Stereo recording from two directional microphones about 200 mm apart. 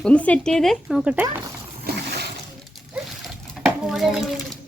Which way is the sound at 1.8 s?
55° right (ahead or behind).